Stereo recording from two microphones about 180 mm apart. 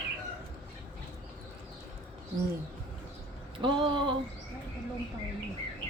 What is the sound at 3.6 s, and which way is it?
Speech, 30° right (ahead or behind).